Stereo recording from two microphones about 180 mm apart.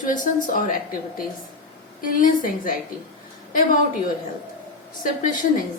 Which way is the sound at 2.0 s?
50° left (ahead or behind).